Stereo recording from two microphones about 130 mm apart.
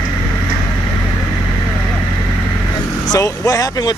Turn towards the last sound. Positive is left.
turn(degrees=25)  # may be behind; listen again after turning